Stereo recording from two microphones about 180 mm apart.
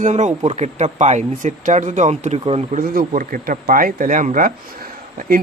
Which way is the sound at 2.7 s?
55° right (ahead or behind).